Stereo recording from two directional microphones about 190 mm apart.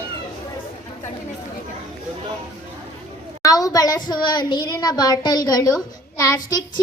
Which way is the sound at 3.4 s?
20° left (ahead or behind).